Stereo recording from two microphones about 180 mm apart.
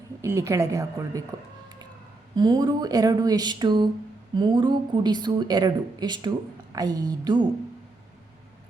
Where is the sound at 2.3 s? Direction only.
20° right (ahead or behind).